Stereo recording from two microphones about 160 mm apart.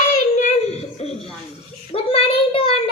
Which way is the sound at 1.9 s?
35° left (ahead or behind).